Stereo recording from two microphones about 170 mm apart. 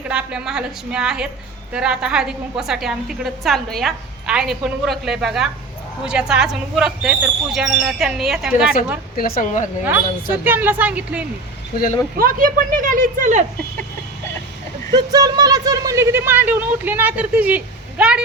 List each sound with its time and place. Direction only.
0.1 s a woman's voice: 5° right (ahead or behind)
9.1 s a woman's voice: 60° left (ahead or behind)
9.8 s speech: 10° right (ahead or behind)
12.1 s speech: 55° right (ahead or behind)
14.9 s speech: 20° right (ahead or behind)